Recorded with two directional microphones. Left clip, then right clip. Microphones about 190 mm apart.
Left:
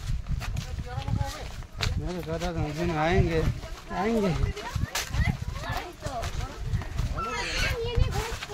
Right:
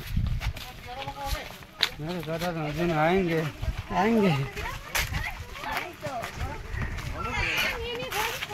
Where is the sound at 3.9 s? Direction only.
45° right (ahead or behind).